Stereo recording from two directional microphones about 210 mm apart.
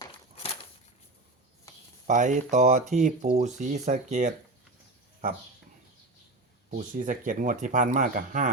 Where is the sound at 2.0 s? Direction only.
35° right (ahead or behind).